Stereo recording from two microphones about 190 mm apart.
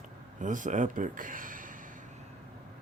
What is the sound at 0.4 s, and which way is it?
Speech, 40° right (ahead or behind).